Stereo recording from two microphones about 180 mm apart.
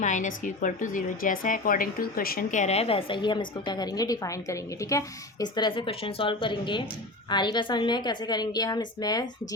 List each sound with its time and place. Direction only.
0.0 s a woman's voice: 45° left (ahead or behind); by 9.2 s 20° left (ahead or behind)